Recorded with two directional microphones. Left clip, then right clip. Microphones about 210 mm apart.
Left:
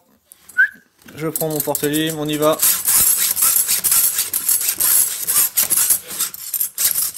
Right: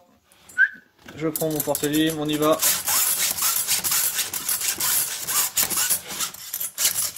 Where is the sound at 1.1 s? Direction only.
45° left (ahead or behind).